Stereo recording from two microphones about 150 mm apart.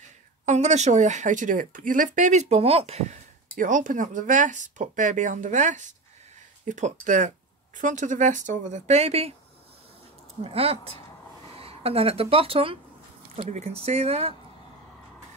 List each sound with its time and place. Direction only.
0.5 s speech: 50° right (ahead or behind)
10.4 s speech: 40° right (ahead or behind)